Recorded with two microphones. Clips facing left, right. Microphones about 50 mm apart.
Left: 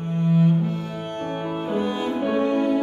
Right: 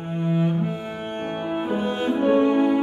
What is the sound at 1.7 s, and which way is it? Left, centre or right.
Music, centre.